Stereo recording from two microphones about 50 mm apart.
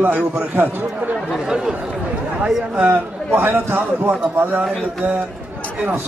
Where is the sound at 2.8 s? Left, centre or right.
Right.